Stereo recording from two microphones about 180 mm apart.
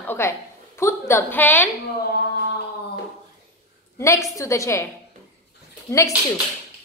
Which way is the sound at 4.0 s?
15° left (ahead or behind).